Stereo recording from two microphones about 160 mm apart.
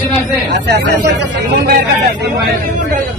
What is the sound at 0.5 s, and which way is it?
Speech, 90° right.